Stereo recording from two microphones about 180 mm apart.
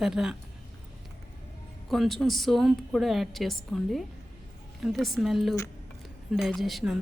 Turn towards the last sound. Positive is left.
turn(degrees=0)  # may be behind; listen again after turning